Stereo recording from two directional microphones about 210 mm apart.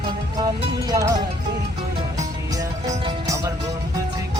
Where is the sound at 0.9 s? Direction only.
15° right (ahead or behind).